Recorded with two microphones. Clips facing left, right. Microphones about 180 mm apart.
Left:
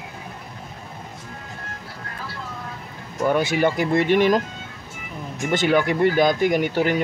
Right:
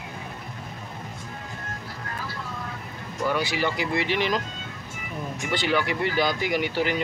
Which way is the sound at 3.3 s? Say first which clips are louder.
Left 7 dB; 50° left (ahead or behind).